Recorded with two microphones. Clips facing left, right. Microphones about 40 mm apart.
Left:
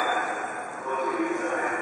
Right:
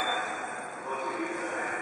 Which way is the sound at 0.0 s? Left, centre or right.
Centre.